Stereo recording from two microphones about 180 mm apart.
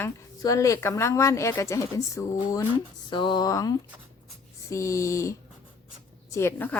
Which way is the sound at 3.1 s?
25° left (ahead or behind).